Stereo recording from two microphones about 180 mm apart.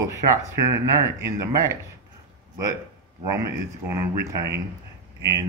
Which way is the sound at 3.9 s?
15° right (ahead or behind).